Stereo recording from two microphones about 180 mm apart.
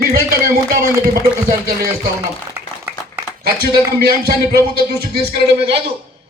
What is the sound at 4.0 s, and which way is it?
A man's voice, 60° right (ahead or behind).